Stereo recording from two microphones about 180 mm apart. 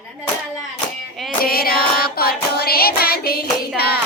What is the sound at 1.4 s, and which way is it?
Music, 55° left (ahead or behind).